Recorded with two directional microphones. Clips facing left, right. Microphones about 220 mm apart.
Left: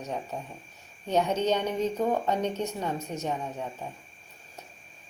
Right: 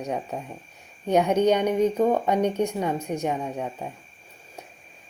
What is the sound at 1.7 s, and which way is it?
Speech, 60° right (ahead or behind).